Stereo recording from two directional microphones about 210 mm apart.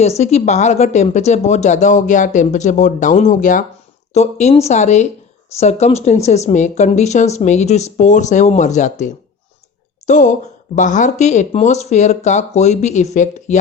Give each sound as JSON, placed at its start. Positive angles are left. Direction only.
{"t": 0.2, "sound": "speech", "side_deg": 30}